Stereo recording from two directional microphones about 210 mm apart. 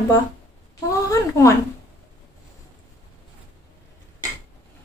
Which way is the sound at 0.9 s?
15° left (ahead or behind).